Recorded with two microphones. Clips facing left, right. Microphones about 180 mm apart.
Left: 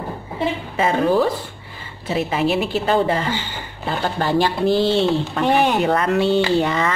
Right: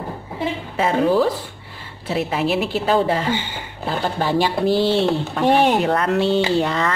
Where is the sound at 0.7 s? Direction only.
Centre (ahead or behind).